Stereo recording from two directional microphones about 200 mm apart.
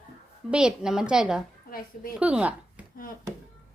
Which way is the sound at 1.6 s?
45° left (ahead or behind).